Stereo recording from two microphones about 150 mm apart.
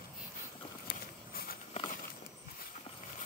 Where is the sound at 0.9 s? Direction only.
80° left.